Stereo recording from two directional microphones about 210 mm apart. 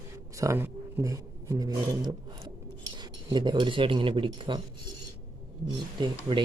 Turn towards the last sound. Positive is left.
turn(degrees=-20)  # may be behind; listen again after turning